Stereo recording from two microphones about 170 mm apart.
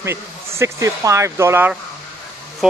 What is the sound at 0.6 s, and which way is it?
A man's voice, 20° right (ahead or behind).